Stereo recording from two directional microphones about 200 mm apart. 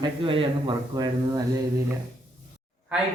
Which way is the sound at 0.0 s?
25° right (ahead or behind).